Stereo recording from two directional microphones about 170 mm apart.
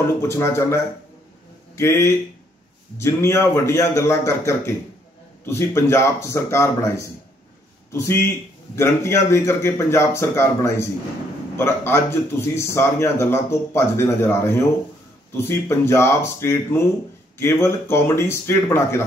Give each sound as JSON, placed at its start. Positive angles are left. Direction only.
{"t": 0.2, "sound": "speech", "side_deg": 15}
{"t": 1.8, "sound": "a man's voice", "side_deg": 15}